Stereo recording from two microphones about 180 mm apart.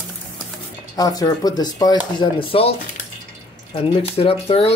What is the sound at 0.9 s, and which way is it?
Speech, 20° left (ahead or behind).